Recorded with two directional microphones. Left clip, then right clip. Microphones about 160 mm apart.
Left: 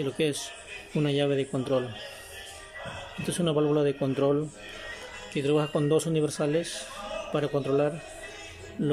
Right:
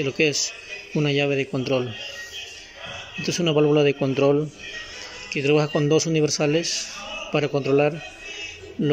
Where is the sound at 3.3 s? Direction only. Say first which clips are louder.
Right 6 dB; centre (ahead or behind).